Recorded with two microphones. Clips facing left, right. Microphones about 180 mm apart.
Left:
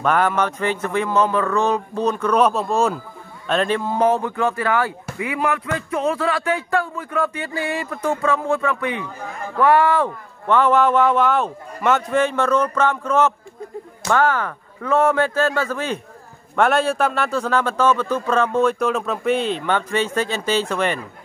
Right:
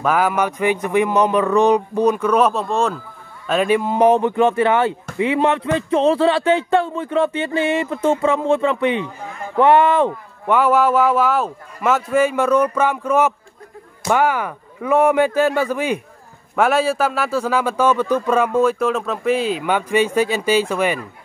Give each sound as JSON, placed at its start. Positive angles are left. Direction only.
{"t": 0.0, "sound": "a man's voice", "side_deg": -5}
{"t": 3.4, "sound": "a man's voice", "side_deg": -10}